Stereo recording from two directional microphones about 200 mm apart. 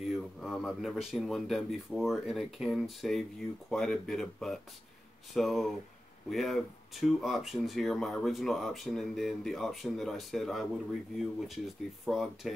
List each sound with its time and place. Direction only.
0.1 s speech: centre (ahead or behind)